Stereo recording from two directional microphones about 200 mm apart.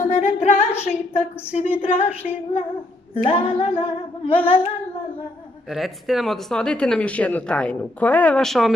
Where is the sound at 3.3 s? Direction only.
25° left (ahead or behind).